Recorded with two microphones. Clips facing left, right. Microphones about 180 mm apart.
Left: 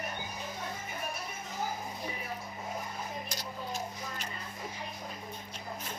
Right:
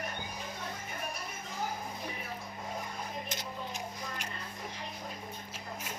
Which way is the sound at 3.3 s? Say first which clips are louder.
Left 1 dB; 20° right (ahead or behind).